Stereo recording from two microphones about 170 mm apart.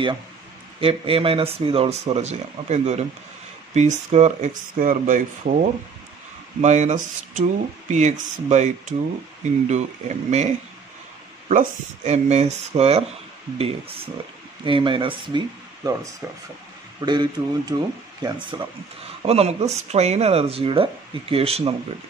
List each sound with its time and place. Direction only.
0.7 s speech: 35° right (ahead or behind); by 5.6 s 50° right (ahead or behind)
6.6 s speech: 45° right (ahead or behind); by 18.7 s 25° right (ahead or behind)
19.2 s speech: 40° right (ahead or behind)